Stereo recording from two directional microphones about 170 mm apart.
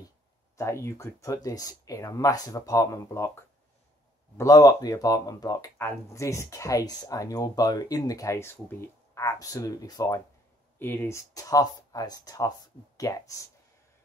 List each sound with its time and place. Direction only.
0.6 s speech: 15° left (ahead or behind)
4.4 s speech: 20° left (ahead or behind)